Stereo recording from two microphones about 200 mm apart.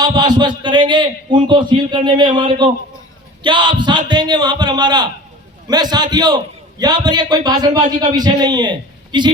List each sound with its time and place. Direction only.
0.0 s a man's voice: 20° right (ahead or behind)